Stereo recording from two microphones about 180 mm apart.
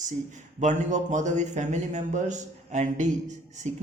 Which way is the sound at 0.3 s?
40° right (ahead or behind).